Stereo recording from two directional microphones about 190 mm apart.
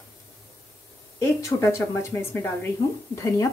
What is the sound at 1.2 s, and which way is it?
Speech, 15° left (ahead or behind).